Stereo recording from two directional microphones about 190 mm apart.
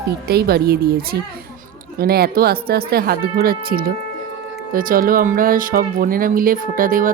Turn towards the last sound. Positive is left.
turn(degrees=-45)  # may be behind; listen again after turning